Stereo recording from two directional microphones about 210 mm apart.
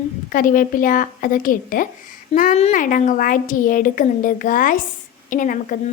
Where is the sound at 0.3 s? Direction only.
40° left (ahead or behind).